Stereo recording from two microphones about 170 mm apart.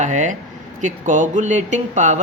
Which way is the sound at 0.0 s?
45° right (ahead or behind).